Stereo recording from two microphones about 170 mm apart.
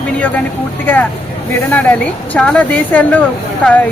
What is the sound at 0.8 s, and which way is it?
Speech, 10° left (ahead or behind).